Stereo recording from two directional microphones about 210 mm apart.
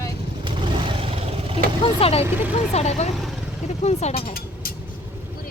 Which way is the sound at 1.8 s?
30° left (ahead or behind).